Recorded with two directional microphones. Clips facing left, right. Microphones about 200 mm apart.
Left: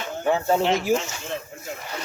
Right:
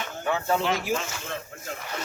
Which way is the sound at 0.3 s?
30° left (ahead or behind).